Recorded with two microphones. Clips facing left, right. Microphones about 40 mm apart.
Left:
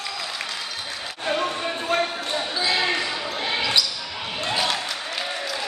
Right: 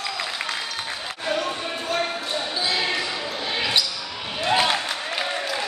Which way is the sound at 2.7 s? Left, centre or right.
Left.